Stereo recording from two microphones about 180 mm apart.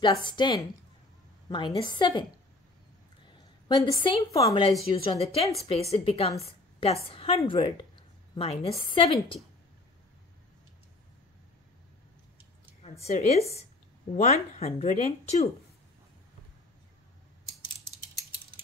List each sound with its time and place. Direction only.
0.0 s a woman's voice: 25° left (ahead or behind)
3.6 s a woman's voice: 25° left (ahead or behind)
4.9 s a woman's voice: 35° left (ahead or behind)
12.8 s speech: 35° left (ahead or behind)